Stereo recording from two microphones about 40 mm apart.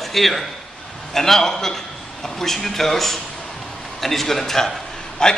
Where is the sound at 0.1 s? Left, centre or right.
Centre.